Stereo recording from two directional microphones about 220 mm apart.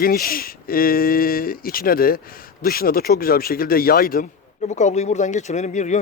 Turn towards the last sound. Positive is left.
turn(degrees=35)  # may be behind; listen again after turning